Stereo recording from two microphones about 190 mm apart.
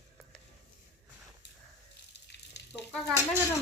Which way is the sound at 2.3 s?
60° left (ahead or behind).